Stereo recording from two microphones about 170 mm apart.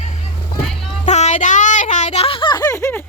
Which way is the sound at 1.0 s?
45° left (ahead or behind).